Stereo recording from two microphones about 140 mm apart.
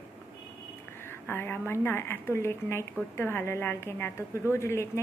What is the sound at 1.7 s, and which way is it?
A woman's voice, 15° left (ahead or behind).